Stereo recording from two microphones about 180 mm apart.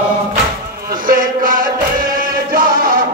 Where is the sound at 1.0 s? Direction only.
50° right (ahead or behind).